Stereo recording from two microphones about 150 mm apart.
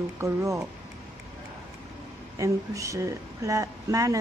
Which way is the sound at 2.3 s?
20° right (ahead or behind).